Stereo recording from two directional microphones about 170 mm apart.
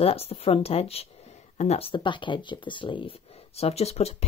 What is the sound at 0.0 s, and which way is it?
Speech, 35° left (ahead or behind).